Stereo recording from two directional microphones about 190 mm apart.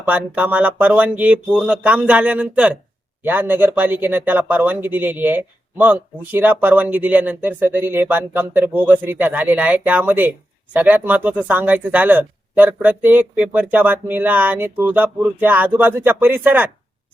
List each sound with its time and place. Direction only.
0.1 s speech: 10° right (ahead or behind)